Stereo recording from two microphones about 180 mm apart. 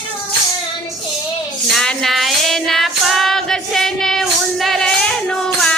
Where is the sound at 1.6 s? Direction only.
Centre (ahead or behind).